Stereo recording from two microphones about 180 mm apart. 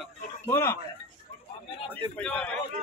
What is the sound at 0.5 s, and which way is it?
Speech, 15° left (ahead or behind).